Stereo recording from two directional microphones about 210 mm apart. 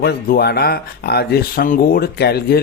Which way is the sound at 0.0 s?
50° left (ahead or behind).